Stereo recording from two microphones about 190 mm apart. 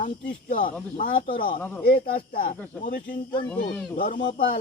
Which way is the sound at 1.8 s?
50° left (ahead or behind).